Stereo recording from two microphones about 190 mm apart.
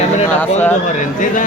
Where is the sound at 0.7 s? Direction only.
40° left (ahead or behind).